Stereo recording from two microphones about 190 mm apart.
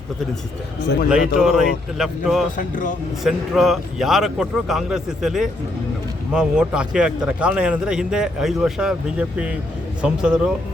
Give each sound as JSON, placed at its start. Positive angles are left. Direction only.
{"t": 1.1, "sound": "a man's voice", "side_deg": -5}
{"t": 2.6, "sound": "speech", "side_deg": 45}
{"t": 3.2, "sound": "a man's voice", "side_deg": 0}